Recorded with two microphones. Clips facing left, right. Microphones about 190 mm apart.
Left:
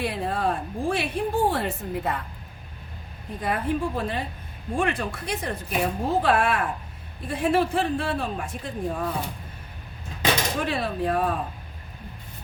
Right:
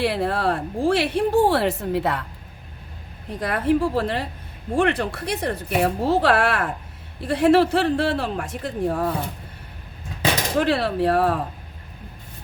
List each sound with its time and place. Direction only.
0.0 s speech: 85° right
3.4 s speech: 80° right
10.6 s speech: 75° right (ahead or behind)